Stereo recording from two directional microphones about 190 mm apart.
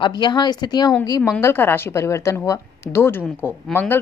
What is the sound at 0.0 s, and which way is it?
Speech, 25° left (ahead or behind).